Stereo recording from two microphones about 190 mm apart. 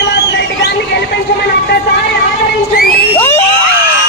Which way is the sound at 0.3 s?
60° left (ahead or behind).